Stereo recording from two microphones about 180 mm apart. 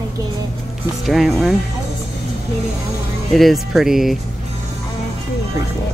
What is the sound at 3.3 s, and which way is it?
Speech, centre (ahead or behind).